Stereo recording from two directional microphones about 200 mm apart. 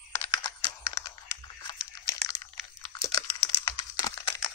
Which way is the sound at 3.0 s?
15° left (ahead or behind).